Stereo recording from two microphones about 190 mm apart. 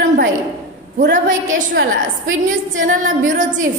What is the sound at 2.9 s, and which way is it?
Speech, 45° right (ahead or behind).